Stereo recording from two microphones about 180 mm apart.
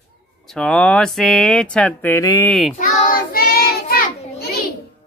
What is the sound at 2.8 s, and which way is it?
Child singing, 50° left (ahead or behind).